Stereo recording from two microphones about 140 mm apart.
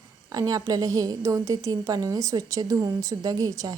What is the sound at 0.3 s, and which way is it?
A woman's voice, 25° right (ahead or behind).